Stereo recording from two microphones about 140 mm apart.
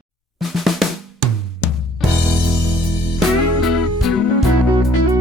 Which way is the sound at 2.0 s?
Centre (ahead or behind).